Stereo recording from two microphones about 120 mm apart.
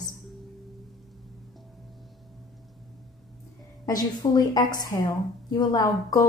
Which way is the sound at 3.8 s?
30° left (ahead or behind).